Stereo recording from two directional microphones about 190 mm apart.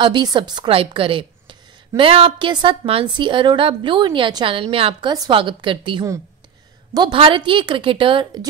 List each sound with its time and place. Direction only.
0.0 s a woman's voice: 25° right (ahead or behind)